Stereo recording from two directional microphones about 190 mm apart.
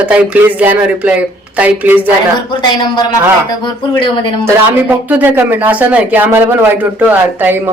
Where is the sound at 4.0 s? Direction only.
25° left (ahead or behind).